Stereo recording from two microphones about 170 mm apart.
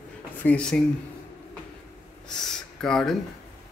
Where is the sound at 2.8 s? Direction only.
5° left (ahead or behind).